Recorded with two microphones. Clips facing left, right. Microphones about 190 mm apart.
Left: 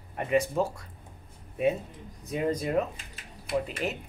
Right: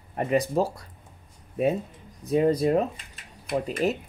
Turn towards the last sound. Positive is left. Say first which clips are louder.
# right 4 dB
turn(degrees=-40)  # may be behind; listen again after turning